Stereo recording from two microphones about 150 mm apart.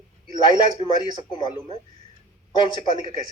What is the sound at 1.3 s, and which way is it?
Speech, 30° left (ahead or behind).